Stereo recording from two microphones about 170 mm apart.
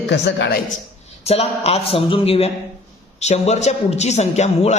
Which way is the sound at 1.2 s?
35° left (ahead or behind).